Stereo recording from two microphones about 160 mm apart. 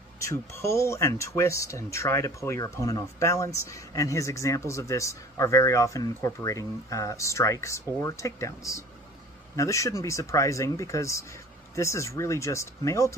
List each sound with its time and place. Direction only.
0.2 s speech: 20° left (ahead or behind)